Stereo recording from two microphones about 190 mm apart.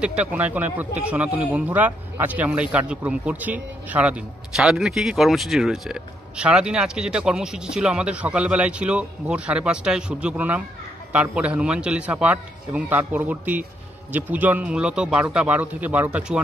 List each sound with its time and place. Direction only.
0.0 s a man's voice: 5° right (ahead or behind)